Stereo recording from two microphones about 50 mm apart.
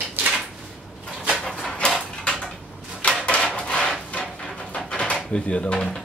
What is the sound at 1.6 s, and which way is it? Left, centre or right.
Dog, centre.